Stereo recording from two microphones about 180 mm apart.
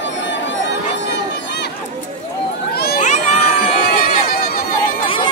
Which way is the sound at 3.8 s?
55° left (ahead or behind).